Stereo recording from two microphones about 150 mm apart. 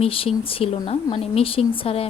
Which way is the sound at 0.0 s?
40° left (ahead or behind).